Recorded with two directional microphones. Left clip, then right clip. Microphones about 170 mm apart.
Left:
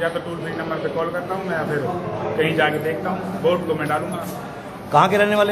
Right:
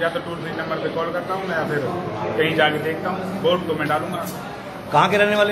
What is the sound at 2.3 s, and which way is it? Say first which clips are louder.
A man's voice: right 1 dB; 10° left (ahead or behind).